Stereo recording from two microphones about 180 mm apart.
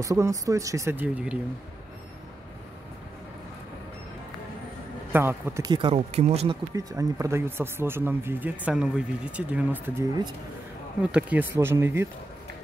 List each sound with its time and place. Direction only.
0.0 s speech: 20° right (ahead or behind)
5.1 s speech: 10° right (ahead or behind)
5.7 s speech: 30° right (ahead or behind); by 12.1 s 15° right (ahead or behind)